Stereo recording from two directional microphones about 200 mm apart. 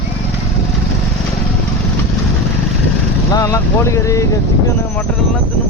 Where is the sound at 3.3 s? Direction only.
15° left (ahead or behind).